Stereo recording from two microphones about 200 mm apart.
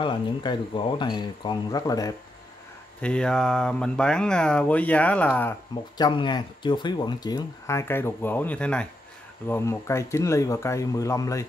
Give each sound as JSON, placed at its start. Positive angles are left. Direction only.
{"t": 0.0, "sound": "speech", "side_deg": 20}
{"t": 3.0, "sound": "speech", "side_deg": 5}
{"t": 5.9, "sound": "speech", "side_deg": 20}